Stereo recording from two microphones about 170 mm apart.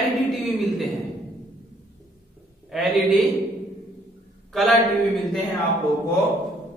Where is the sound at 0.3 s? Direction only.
Centre (ahead or behind).